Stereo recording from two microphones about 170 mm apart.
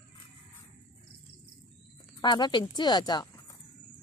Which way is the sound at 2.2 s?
25° left (ahead or behind).